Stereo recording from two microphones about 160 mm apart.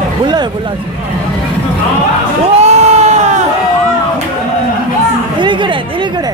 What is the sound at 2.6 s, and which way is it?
Crowd, 45° right (ahead or behind).